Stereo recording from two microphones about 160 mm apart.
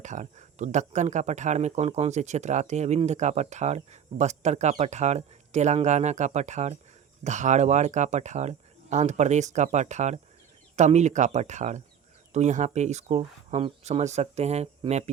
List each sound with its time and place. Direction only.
0.0 s speech: 50° right (ahead or behind)